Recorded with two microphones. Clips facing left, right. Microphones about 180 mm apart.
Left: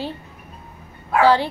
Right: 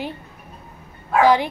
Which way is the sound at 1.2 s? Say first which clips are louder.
Even; 15° right (ahead or behind).